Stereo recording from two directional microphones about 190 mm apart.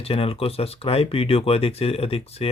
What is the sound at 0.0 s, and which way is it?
Speech, 30° left (ahead or behind).